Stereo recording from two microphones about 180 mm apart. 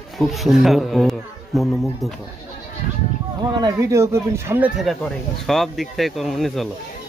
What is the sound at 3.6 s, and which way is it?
Speech, 20° right (ahead or behind).